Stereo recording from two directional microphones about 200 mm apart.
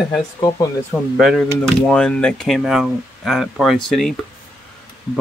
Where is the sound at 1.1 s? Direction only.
Centre (ahead or behind).